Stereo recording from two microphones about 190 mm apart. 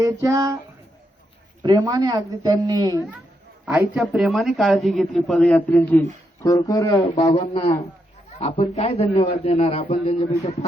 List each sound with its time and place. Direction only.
0.0 s speech: 15° right (ahead or behind)
1.6 s a woman's voice: 20° right (ahead or behind)
3.7 s speech: 5° right (ahead or behind); by 7.1 s 15° left (ahead or behind)
7.4 s a man's voice: 35° left (ahead or behind)